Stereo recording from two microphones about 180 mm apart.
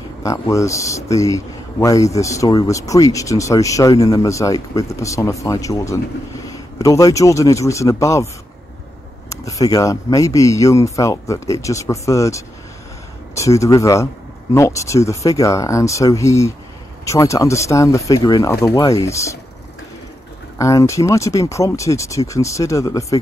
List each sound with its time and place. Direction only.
0.2 s speech: 15° left (ahead or behind)
9.3 s speech: 20° left (ahead or behind)
20.5 s speech: 15° left (ahead or behind)